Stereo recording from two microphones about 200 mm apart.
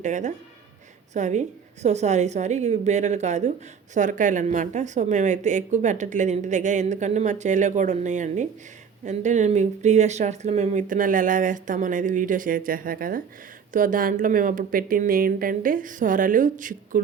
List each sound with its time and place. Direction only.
0.0 s a woman's voice: 35° right (ahead or behind)